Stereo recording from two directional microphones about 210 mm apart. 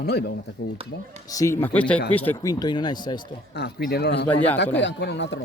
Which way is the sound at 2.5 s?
20° left (ahead or behind).